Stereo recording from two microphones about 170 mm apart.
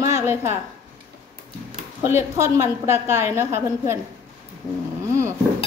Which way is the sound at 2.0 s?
15° right (ahead or behind).